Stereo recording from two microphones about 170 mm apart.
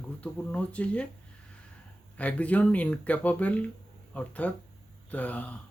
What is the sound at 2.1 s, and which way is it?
Speech, 10° left (ahead or behind).